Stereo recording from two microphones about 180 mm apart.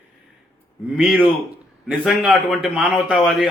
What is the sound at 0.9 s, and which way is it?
A man's voice, 10° right (ahead or behind).